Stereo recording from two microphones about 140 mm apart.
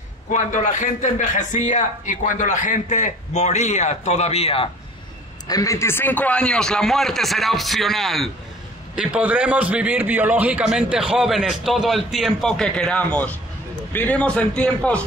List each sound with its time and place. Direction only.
0.3 s a man's voice: 60° left (ahead or behind)
5.5 s a man's voice: 25° left (ahead or behind); by 15.0 s 10° left (ahead or behind)